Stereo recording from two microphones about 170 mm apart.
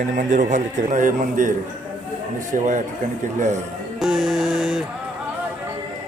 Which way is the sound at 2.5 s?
50° right (ahead or behind).